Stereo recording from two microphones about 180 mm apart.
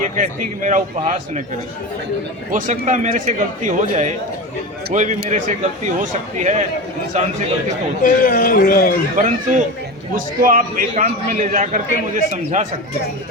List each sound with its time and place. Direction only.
0.0 s a man's voice: 45° right (ahead or behind)
2.5 s a man's voice: 45° right (ahead or behind)
8.0 s a man's voice: 50° left (ahead or behind)
9.1 s a man's voice: 45° right (ahead or behind)